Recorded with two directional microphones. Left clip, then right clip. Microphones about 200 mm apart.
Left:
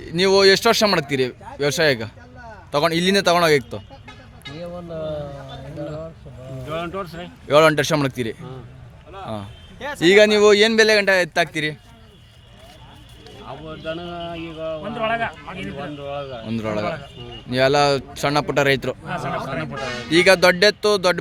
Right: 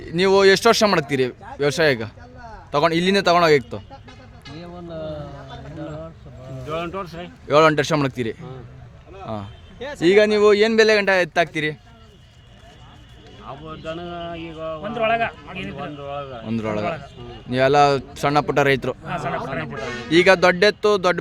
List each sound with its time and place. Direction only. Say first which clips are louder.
0.0 s speech: even; 10° right (ahead or behind)
4.6 s a sound: left 3 dB; 35° left (ahead or behind)
6.7 s speech: even; 5° right (ahead or behind)
10.0 s speech: left 2 dB; 5° left (ahead or behind)
13.5 s speech: left 2 dB; 5° left (ahead or behind)
14.8 s speech: right 3 dB; 30° right (ahead or behind)
15.6 s speech: left 1 dB; 10° left (ahead or behind)
16.5 s speech: even; 10° right (ahead or behind)
19.6 s speech: left 1 dB; 40° left (ahead or behind)
20.1 s speech: even; 10° right (ahead or behind)